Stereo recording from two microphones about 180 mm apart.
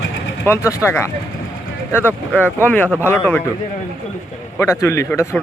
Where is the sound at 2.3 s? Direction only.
10° left (ahead or behind).